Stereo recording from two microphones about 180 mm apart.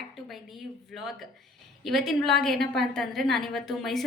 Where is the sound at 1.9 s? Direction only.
Centre (ahead or behind).